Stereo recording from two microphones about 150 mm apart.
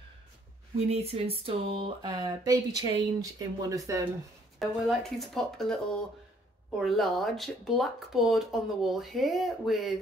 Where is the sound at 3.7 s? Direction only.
25° right (ahead or behind).